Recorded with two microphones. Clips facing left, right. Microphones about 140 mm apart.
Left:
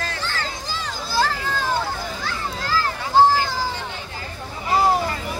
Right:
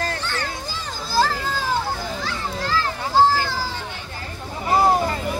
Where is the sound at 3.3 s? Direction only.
15° left (ahead or behind).